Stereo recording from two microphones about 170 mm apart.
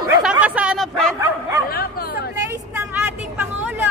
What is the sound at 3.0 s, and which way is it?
Vehicle, 10° right (ahead or behind).